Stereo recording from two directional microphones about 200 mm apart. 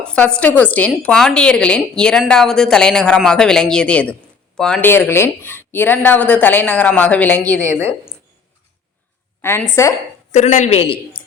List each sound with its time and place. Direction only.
0.0 s a woman's voice: 5° left (ahead or behind)
9.4 s a woman's voice: 10° left (ahead or behind)
10.3 s a man's voice: 35° left (ahead or behind)